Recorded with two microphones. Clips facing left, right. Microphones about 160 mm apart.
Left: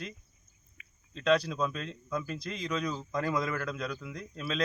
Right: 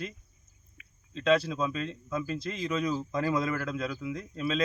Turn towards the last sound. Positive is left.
turn(degrees=0)  # may be behind; listen again after turning